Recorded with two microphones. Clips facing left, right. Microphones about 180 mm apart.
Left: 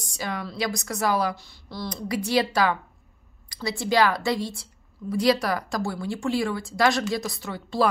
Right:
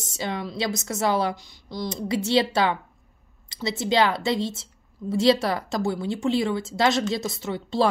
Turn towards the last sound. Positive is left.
turn(degrees=-20)  # may be behind; listen again after turning